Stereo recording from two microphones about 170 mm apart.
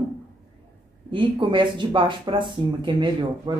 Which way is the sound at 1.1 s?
30° right (ahead or behind).